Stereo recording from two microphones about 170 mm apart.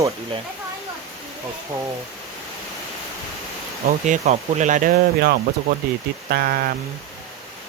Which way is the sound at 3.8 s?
45° right (ahead or behind).